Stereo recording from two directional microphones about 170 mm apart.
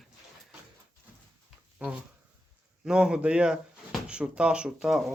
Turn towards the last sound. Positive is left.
turn(degrees=-5)  # may be behind; listen again after turning